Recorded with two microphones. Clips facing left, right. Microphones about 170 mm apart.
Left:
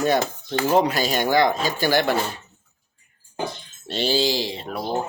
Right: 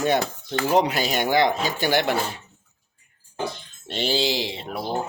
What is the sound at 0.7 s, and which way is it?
Speech, 20° right (ahead or behind).